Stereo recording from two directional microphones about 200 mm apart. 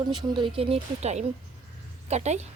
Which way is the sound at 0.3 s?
25° right (ahead or behind).